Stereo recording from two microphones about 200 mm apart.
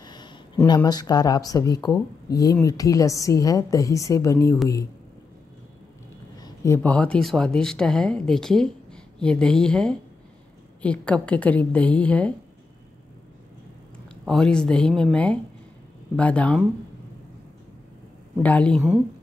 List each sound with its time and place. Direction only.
0.0 s a sound: 20° left (ahead or behind)
0.7 s a woman's voice: 20° left (ahead or behind)
6.4 s a woman's voice: 15° left (ahead or behind)
14.2 s a woman's voice: 5° left (ahead or behind)
18.4 s a woman's voice: 5° left (ahead or behind)